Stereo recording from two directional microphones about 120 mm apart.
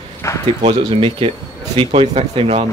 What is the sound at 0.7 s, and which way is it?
Speech, 55° right (ahead or behind).